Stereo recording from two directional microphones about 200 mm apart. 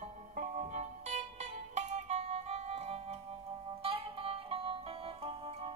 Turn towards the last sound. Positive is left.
turn(degrees=-30)  # may be behind; listen again after turning